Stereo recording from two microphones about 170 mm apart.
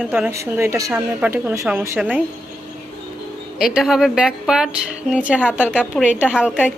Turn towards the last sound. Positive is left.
turn(degrees=-5)  # may be behind; listen again after turning